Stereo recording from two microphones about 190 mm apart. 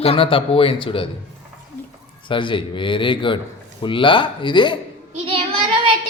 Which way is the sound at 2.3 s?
25° left (ahead or behind).